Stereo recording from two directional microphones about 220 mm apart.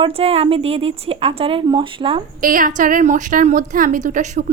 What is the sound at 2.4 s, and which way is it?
A woman's voice, 40° right (ahead or behind).